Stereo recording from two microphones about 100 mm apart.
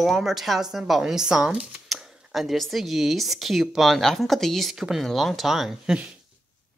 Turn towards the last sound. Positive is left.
turn(degrees=-5)  # may be behind; listen again after turning